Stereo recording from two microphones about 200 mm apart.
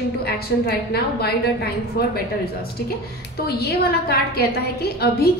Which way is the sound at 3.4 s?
50° left (ahead or behind).